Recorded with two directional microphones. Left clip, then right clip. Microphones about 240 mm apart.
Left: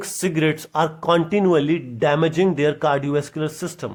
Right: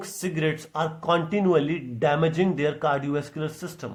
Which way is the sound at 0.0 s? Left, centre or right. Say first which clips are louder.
Left 6 dB; left.